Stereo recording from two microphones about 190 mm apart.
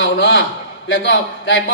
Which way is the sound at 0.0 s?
80° left.